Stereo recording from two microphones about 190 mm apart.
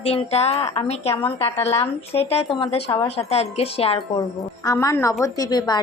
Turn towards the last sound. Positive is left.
turn(degrees=20)  # may be behind; listen again after turning